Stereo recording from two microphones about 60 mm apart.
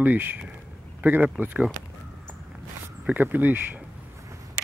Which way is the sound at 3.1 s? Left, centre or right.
Right.